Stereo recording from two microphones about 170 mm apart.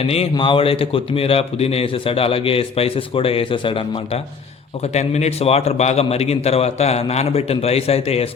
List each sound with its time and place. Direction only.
0.0 s speech: 35° left (ahead or behind)